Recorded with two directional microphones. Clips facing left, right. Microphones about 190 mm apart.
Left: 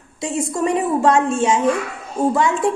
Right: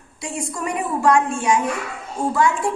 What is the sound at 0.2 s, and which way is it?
A woman's voice, 25° left (ahead or behind).